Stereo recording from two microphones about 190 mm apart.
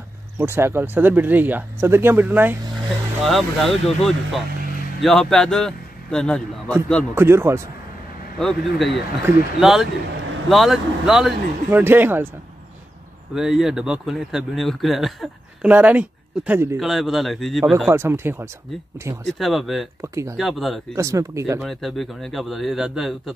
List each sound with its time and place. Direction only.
0.4 s speech: 15° right (ahead or behind)
3.3 s a man's voice: centre (ahead or behind)
7.2 s speech: 15° right (ahead or behind)
8.4 s speech: centre (ahead or behind)
13.3 s speech: 5° right (ahead or behind)
17.8 s speech: 10° right (ahead or behind)
19.2 s speech: centre (ahead or behind)
20.0 s speech: 15° right (ahead or behind)
20.3 s speech: centre (ahead or behind)
20.9 s speech: 15° right (ahead or behind)
21.5 s speech: centre (ahead or behind)